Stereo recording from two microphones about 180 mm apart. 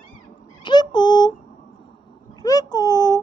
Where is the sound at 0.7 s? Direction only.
25° left (ahead or behind).